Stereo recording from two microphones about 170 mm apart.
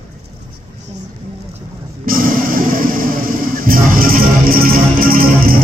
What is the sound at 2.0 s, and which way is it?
Music, 55° right (ahead or behind).